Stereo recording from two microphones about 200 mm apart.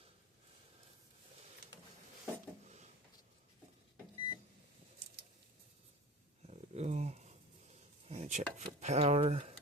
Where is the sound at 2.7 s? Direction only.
35° right (ahead or behind).